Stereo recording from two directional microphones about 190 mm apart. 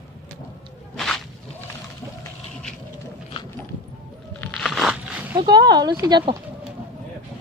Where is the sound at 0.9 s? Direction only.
Centre (ahead or behind).